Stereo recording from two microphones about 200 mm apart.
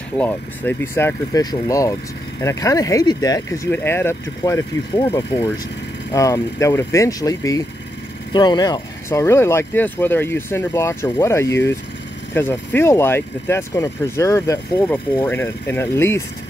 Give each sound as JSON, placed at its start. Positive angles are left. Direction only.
{"t": 0.2, "sound": "speech", "side_deg": 10}